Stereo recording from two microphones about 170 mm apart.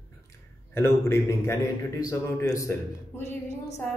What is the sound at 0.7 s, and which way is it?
A man's voice, 15° left (ahead or behind).